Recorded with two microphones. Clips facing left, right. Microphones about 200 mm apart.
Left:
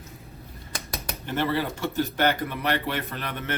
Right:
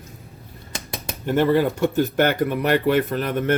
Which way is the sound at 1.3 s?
50° right (ahead or behind).